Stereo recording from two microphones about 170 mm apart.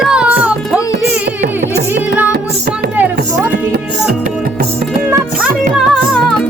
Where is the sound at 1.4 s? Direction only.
80° right.